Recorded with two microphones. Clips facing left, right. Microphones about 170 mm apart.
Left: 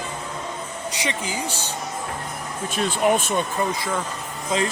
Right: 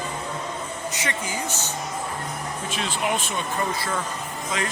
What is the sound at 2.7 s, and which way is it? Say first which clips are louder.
Speech: left 7 dB; 45° left (ahead or behind).